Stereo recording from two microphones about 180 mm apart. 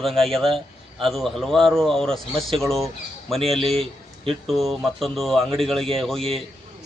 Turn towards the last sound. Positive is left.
turn(degrees=0)  # may be behind; listen again after turning